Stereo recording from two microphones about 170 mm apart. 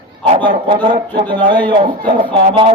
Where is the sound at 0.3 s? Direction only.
30° right (ahead or behind).